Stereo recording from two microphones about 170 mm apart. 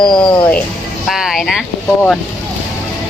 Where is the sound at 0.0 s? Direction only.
25° left (ahead or behind).